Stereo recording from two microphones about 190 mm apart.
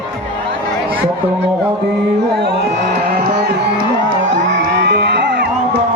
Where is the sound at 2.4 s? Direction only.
60° right (ahead or behind).